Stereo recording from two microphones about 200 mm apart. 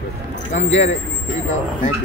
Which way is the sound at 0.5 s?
35° left (ahead or behind).